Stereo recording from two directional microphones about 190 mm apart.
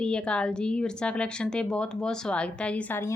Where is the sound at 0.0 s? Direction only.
5° left (ahead or behind).